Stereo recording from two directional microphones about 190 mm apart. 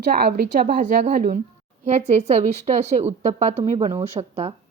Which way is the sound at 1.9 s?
35° right (ahead or behind).